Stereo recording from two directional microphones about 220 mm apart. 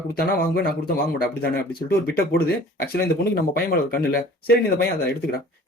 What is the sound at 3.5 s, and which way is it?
Speech, 45° left (ahead or behind).